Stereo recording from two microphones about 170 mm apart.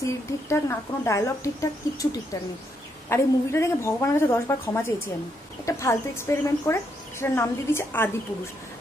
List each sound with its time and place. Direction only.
0.0 s a woman's voice: 15° left (ahead or behind)